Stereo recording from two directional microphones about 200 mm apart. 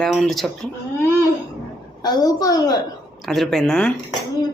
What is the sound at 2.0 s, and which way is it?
Speech, 20° left (ahead or behind).